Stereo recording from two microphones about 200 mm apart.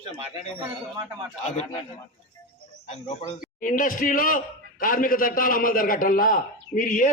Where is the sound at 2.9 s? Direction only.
35° left (ahead or behind).